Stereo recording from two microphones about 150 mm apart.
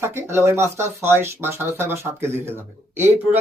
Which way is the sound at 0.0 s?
15° right (ahead or behind).